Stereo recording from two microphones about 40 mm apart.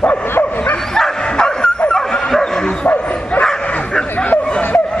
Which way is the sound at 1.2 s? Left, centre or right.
Left.